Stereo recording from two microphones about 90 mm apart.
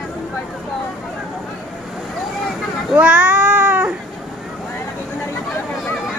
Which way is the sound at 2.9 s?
15° right (ahead or behind).